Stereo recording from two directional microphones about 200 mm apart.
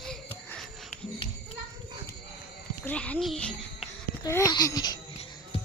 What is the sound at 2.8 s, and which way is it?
A child's voice, 5° left (ahead or behind).